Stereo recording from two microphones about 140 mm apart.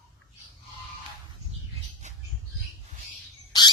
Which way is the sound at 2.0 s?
60° right (ahead or behind).